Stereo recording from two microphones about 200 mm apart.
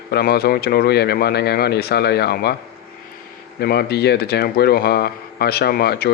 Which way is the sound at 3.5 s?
50° left (ahead or behind).